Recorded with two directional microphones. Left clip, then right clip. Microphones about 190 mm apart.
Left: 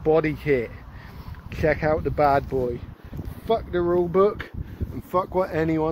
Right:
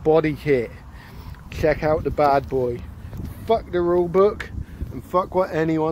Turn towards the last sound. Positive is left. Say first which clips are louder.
# right 2 dB
turn(degrees=-5)  # may be behind; listen again after turning